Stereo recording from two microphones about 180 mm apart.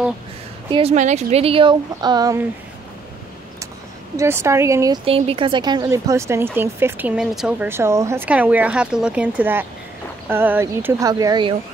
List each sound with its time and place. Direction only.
0.7 s speech: 30° right (ahead or behind)
0.9 s a woman's voice: 40° right (ahead or behind); by 2.4 s 20° right (ahead or behind)
4.2 s speech: 15° right (ahead or behind)
5.0 s speech: 30° right (ahead or behind)